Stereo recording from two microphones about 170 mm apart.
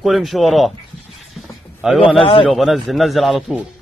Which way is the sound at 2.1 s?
35° left (ahead or behind).